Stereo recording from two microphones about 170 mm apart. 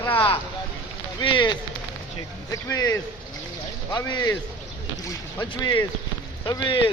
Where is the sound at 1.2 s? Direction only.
25° left (ahead or behind).